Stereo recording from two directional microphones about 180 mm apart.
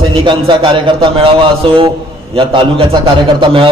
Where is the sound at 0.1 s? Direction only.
25° right (ahead or behind).